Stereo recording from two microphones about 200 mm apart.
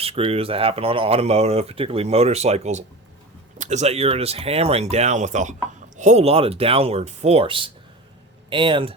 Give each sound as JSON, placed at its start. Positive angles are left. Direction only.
{"t": 0.0, "sound": "speech", "side_deg": -30}